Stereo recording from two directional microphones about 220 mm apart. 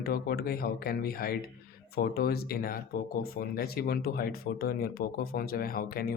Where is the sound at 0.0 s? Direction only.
45° left (ahead or behind).